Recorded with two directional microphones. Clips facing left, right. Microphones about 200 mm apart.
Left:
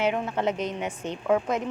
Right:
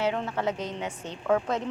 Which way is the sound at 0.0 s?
15° left (ahead or behind).